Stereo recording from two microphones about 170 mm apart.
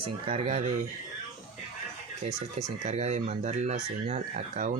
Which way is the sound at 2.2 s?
45° right (ahead or behind).